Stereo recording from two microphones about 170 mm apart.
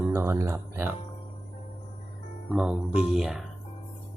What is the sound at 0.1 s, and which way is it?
Speech, 15° right (ahead or behind).